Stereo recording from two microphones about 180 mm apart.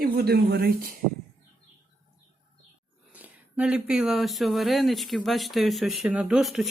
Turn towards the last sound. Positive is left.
turn(degrees=0)  # may be behind; listen again after turning